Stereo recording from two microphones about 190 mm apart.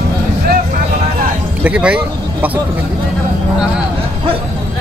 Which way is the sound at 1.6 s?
5° right (ahead or behind).